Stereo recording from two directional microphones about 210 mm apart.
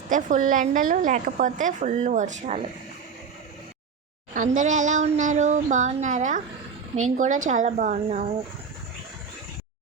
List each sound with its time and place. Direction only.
0.1 s a woman's voice: 40° right (ahead or behind)
4.4 s a woman's voice: 35° right (ahead or behind)